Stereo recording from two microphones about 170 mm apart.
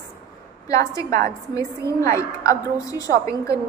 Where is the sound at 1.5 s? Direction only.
20° left (ahead or behind).